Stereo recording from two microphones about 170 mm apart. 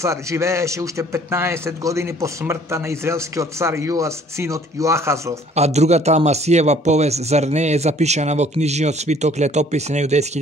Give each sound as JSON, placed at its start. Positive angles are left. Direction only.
{"t": 0.0, "sound": "a man's voice", "side_deg": -15}
{"t": 5.6, "sound": "speech", "side_deg": -40}